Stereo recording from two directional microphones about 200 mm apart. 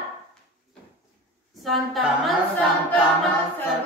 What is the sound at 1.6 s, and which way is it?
Speech, centre (ahead or behind).